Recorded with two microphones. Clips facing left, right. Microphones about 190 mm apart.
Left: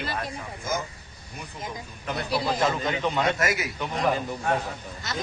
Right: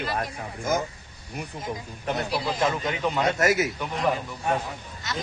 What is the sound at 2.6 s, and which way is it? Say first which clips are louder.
Speech: even; 5° right (ahead or behind).